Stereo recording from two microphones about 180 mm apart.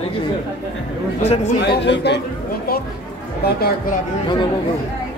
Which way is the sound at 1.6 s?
70° left (ahead or behind).